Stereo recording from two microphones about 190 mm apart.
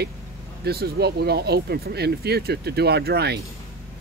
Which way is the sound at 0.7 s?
55° right (ahead or behind).